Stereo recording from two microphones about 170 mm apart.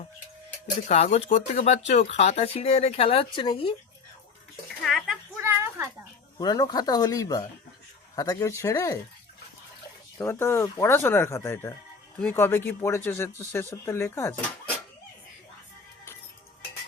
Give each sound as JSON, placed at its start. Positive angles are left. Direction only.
{"t": 1.1, "sound": "speech", "side_deg": 40}
{"t": 4.8, "sound": "speech", "side_deg": 0}
{"t": 5.4, "sound": "a sound", "side_deg": -15}
{"t": 6.4, "sound": "speech", "side_deg": 25}
{"t": 10.2, "sound": "speech", "side_deg": 15}